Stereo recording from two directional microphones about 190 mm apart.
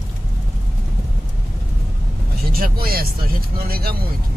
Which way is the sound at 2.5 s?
50° right (ahead or behind).